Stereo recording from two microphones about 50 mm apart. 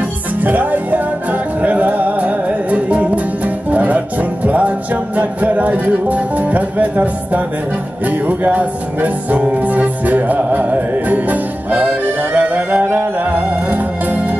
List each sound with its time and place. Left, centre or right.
0.4 s music: right